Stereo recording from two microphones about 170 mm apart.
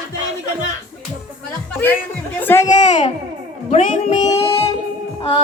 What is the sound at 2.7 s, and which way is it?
A child's voice, 45° left (ahead or behind).